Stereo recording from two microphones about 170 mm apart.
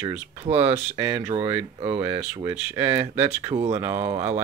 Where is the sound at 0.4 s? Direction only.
35° right (ahead or behind).